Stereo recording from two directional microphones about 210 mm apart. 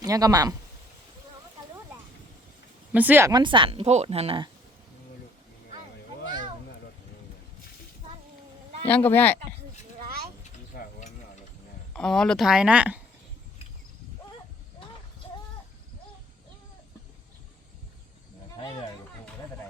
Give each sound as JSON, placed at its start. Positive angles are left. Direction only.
{"t": 0.0, "sound": "speech", "side_deg": -15}
{"t": 2.9, "sound": "speech", "side_deg": -10}
{"t": 8.9, "sound": "speech", "side_deg": 10}
{"t": 10.0, "sound": "a sound", "side_deg": -45}
{"t": 10.7, "sound": "mechanisms", "side_deg": 45}
{"t": 11.9, "sound": "speech", "side_deg": 5}